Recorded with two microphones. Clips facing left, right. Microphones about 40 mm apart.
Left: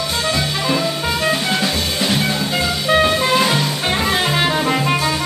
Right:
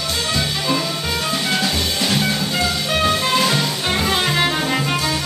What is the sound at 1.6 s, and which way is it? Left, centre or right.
Music, centre.